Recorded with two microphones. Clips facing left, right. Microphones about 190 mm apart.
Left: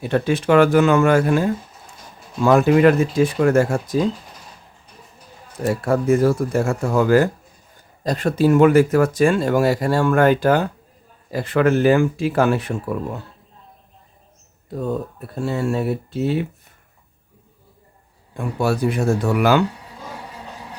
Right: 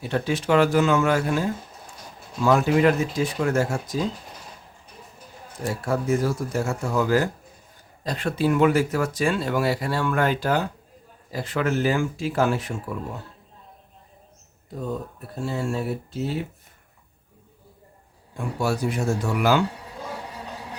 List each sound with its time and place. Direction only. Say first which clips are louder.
0.0 s speech: left 6 dB; 55° left (ahead or behind)
5.6 s speech: left 7 dB; 60° left (ahead or behind)
8.0 s speech: left 6 dB; 40° left (ahead or behind); by 13.0 s 65° left (ahead or behind)
14.7 s speech: left 6 dB; 65° left (ahead or behind)
18.3 s speech: left 5 dB; 60° left (ahead or behind)